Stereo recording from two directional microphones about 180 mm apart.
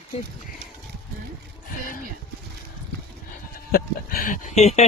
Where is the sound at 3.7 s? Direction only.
55° left (ahead or behind); by 4.8 s 40° left (ahead or behind).